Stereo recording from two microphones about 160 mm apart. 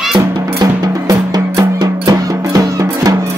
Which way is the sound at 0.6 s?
25° right (ahead or behind).